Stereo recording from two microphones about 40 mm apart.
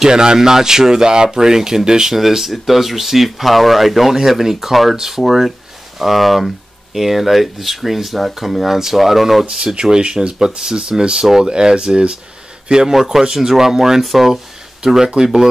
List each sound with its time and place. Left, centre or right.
0.0 s speech: centre
12.8 s speech: centre
14.8 s speech: centre